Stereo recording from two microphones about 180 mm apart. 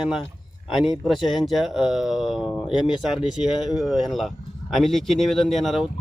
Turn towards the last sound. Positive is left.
turn(degrees=0)  # may be behind; listen again after turning